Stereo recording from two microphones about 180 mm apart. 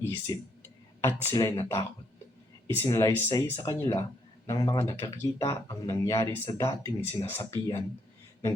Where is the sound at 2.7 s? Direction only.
15° left (ahead or behind).